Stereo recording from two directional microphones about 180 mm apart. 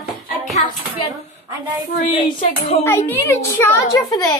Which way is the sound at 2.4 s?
40° left (ahead or behind).